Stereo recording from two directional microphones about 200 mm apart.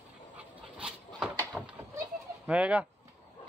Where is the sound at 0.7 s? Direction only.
5° right (ahead or behind).